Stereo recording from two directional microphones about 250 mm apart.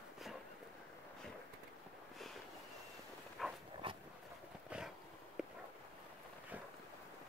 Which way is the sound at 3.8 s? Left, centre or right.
Centre.